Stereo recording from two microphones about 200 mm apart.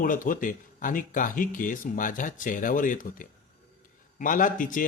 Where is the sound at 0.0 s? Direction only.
45° left (ahead or behind).